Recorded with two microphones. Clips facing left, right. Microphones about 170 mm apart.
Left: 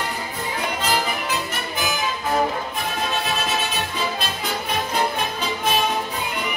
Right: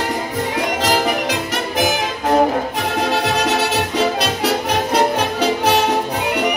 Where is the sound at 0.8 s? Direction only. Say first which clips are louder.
Right 6 dB; 85° right.